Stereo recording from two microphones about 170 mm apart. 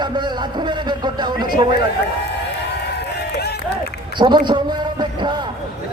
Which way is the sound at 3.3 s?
70° left (ahead or behind).